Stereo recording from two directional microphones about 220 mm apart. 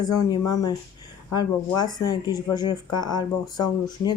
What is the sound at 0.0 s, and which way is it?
Speech, 15° left (ahead or behind).